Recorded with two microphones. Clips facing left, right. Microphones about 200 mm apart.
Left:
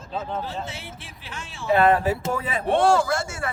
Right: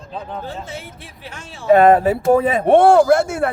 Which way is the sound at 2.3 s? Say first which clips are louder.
Right 11 dB; 55° right (ahead or behind).